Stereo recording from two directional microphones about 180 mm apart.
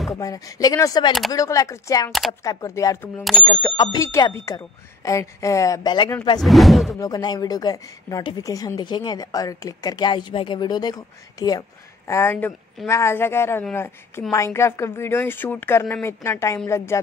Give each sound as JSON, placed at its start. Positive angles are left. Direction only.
{"t": 0.1, "sound": "a woman's voice", "side_deg": 20}
{"t": 3.7, "sound": "a woman's voice", "side_deg": 25}
{"t": 6.4, "sound": "speech", "side_deg": 0}
{"t": 6.9, "sound": "a woman's voice", "side_deg": 20}